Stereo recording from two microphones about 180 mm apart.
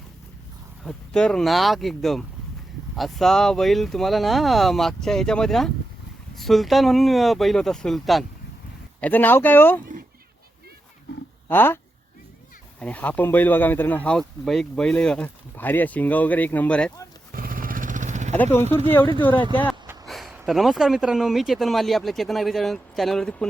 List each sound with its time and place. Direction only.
0.9 s speech: 5° left (ahead or behind)
11.4 s speech: 10° left (ahead or behind)
12.8 s speech: 10° left (ahead or behind)
17.3 s vehicle: 50° right (ahead or behind)
20.1 s a sound: centre (ahead or behind)
20.5 s speech: centre (ahead or behind)